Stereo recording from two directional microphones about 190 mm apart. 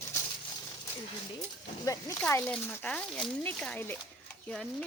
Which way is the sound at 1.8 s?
15° left (ahead or behind).